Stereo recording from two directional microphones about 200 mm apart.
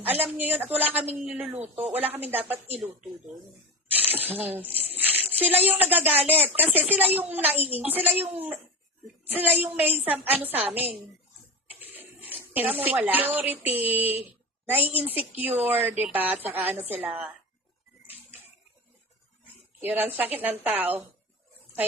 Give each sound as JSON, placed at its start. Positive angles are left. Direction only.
{"t": 0.0, "sound": "a woman's voice", "side_deg": -10}
{"t": 4.1, "sound": "a sound", "side_deg": -10}
{"t": 5.6, "sound": "a woman's voice", "side_deg": -10}
{"t": 6.3, "sound": "speech", "side_deg": -30}
{"t": 6.6, "sound": "a woman's voice", "side_deg": -10}
{"t": 11.8, "sound": "a sound", "side_deg": -10}
{"t": 13.6, "sound": "a woman's voice", "side_deg": -10}
{"t": 19.8, "sound": "a woman's voice", "side_deg": -10}